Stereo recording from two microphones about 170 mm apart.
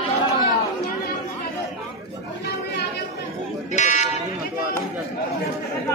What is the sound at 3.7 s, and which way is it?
Sheep, 45° left (ahead or behind).